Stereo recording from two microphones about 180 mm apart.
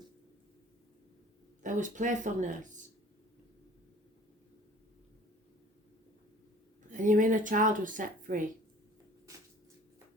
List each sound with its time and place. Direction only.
1.6 s speech: 45° right (ahead or behind)
6.9 s speech: 45° right (ahead or behind)